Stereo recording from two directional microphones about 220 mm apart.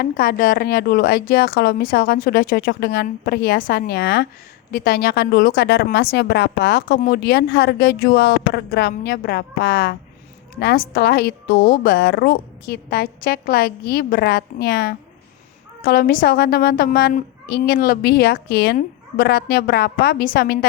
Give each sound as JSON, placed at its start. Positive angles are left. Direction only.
{"t": 0.0, "sound": "a woman's voice", "side_deg": 40}